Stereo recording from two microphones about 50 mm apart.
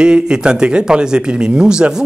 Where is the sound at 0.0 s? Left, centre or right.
Centre.